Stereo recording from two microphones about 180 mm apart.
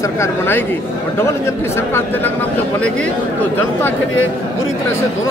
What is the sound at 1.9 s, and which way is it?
Speech, 15° left (ahead or behind).